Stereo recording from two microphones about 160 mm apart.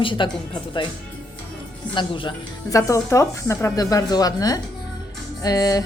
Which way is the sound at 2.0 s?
30° left (ahead or behind).